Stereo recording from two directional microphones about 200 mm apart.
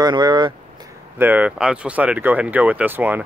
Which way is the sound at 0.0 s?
20° right (ahead or behind).